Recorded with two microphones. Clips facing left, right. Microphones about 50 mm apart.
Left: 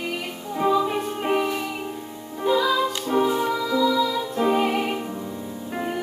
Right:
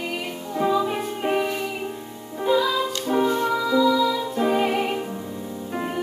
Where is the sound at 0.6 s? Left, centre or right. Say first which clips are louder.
Left 1 dB; centre.